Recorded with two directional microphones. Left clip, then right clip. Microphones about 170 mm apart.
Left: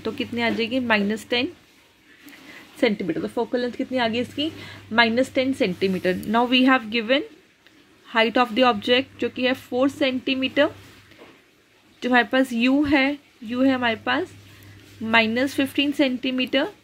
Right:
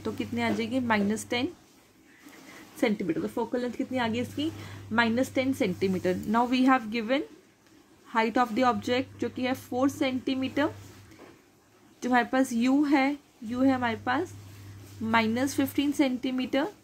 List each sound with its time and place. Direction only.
0.0 s speech: 25° left (ahead or behind)
2.8 s speech: 25° left (ahead or behind)
12.0 s speech: 25° left (ahead or behind)